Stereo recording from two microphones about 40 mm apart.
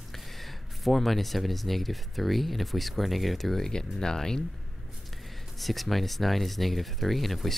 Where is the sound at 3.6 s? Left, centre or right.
Centre.